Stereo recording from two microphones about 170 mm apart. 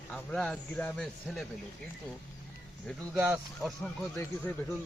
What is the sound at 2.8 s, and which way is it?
A man's voice, centre (ahead or behind).